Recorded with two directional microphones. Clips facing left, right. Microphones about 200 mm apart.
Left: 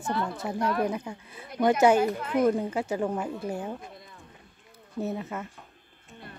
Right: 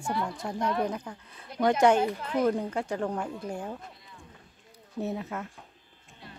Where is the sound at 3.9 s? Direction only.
50° left (ahead or behind).